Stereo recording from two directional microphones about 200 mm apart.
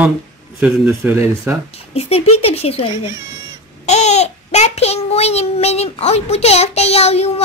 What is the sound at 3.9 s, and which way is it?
Child singing, 35° left (ahead or behind).